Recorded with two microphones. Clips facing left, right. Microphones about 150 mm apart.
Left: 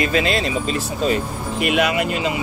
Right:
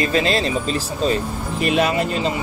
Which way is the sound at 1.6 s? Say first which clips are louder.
Even; 35° right (ahead or behind).